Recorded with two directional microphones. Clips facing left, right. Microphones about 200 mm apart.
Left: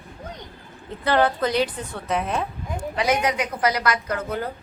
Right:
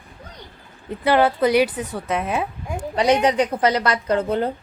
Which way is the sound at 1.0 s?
10° right (ahead or behind).